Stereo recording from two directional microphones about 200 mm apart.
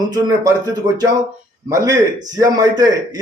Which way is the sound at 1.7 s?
15° right (ahead or behind).